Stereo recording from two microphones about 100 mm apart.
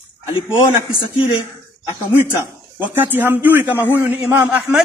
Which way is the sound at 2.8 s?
20° right (ahead or behind).